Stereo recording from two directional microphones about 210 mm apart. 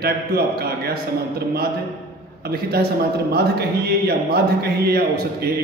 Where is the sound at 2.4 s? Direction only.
50° right (ahead or behind).